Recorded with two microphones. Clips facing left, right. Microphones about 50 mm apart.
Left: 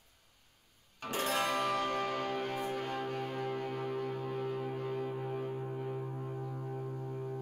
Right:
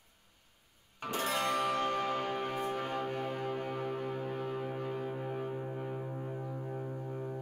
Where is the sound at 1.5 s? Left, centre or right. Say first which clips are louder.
Right 1 dB; centre.